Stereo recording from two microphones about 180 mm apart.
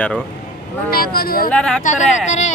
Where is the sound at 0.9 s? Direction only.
55° left (ahead or behind).